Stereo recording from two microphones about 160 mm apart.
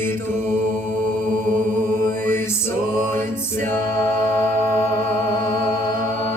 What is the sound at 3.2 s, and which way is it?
Music, 15° left (ahead or behind).